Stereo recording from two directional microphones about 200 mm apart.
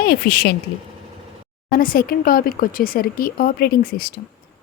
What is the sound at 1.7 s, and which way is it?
Speech, 45° left (ahead or behind).